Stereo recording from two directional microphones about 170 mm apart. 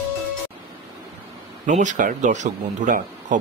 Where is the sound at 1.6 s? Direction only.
45° right (ahead or behind).